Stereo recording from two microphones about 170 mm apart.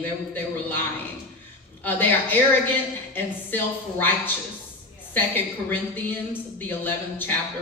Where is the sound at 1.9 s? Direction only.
10° left (ahead or behind).